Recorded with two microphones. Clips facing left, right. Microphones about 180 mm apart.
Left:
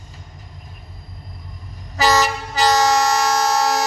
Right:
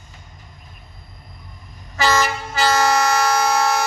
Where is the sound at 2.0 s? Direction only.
40° left (ahead or behind).